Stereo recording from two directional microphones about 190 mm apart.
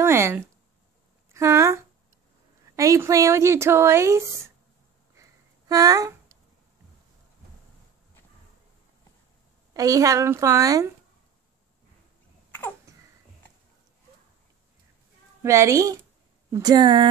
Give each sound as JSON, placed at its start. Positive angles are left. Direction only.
{"t": 0.0, "sound": "a sound", "side_deg": -15}
{"t": 1.3, "sound": "speech", "side_deg": -15}
{"t": 5.1, "sound": "a sound", "side_deg": -15}
{"t": 9.8, "sound": "speech", "side_deg": -15}
{"t": 12.9, "sound": "babbling", "side_deg": -15}
{"t": 15.4, "sound": "speech", "side_deg": -15}